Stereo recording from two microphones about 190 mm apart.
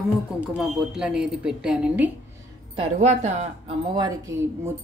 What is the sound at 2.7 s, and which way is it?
Speech, 35° right (ahead or behind).